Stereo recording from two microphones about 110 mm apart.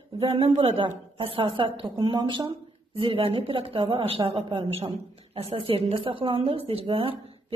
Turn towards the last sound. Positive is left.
turn(degrees=-55)  # may be behind; listen again after turning